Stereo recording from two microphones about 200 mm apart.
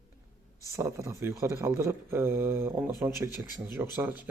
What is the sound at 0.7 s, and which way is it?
Speech, 15° right (ahead or behind).